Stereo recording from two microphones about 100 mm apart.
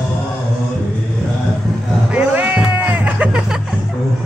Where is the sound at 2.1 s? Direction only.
15° right (ahead or behind).